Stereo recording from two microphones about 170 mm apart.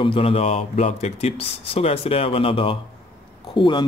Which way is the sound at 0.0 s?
30° left (ahead or behind).